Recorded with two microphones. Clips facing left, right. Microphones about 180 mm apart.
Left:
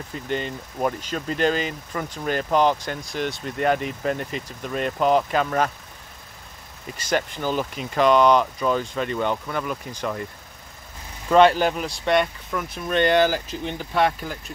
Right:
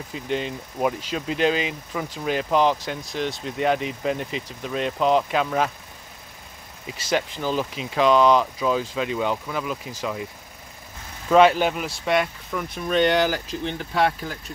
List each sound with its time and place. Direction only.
0.1 s speech: centre (ahead or behind)
6.9 s speech: 5° right (ahead or behind)
11.2 s speech: centre (ahead or behind)